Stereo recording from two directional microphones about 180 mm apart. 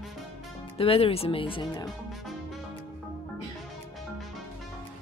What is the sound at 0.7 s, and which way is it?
Speech, 30° left (ahead or behind).